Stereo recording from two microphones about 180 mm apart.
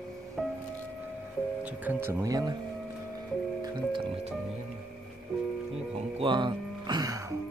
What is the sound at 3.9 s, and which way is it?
Speech, 30° right (ahead or behind).